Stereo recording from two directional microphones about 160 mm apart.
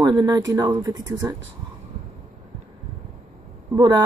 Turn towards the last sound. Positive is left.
turn(degrees=-20)  # may be behind; listen again after turning